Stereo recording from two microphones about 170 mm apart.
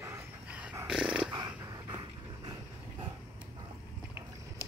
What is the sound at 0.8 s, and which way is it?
Dog, 5° right (ahead or behind).